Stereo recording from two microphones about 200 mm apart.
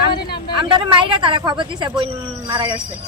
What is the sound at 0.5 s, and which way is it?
Speech, 25° right (ahead or behind).